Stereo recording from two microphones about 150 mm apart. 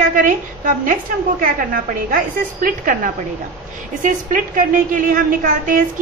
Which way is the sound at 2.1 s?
70° right (ahead or behind).